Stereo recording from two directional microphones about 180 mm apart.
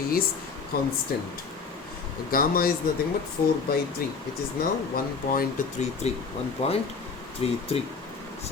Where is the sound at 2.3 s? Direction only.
55° left (ahead or behind).